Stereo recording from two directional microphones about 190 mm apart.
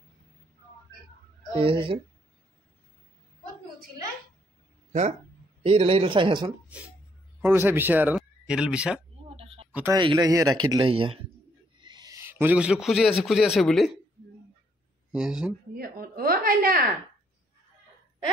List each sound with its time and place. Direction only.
1.5 s speech: 30° right (ahead or behind)
5.6 s speech: 30° right (ahead or behind)
6.7 s speech: 5° right (ahead or behind)
9.3 s a sound: 30° right (ahead or behind)
9.7 s a sound: 10° right (ahead or behind)
9.9 s speech: 20° right (ahead or behind)
11.8 s a sound: 20° right (ahead or behind); by 13.1 s centre (ahead or behind)
13.2 s speech: centre (ahead or behind)
15.1 s speech: 5° right (ahead or behind)
15.7 s a woman's voice: 50° right (ahead or behind)